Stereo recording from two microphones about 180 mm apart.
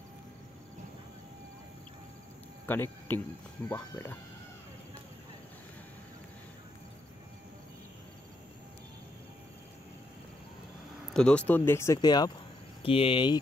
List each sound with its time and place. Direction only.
2.6 s speech: 10° left (ahead or behind)
11.1 s speech: 5° left (ahead or behind); by 13.4 s 30° left (ahead or behind)